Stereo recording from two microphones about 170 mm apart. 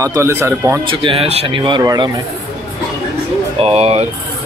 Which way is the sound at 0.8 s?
30° right (ahead or behind).